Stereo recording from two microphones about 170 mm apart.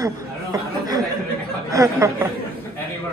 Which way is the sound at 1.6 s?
20° right (ahead or behind).